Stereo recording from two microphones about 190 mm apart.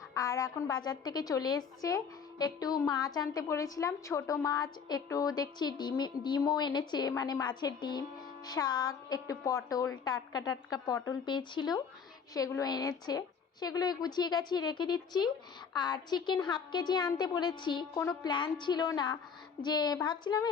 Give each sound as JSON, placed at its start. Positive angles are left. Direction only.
{"t": 0.1, "sound": "a woman's voice", "side_deg": 20}